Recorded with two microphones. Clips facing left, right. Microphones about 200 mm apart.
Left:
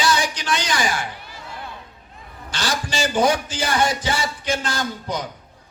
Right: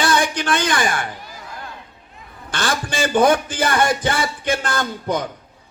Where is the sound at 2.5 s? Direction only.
55° right (ahead or behind).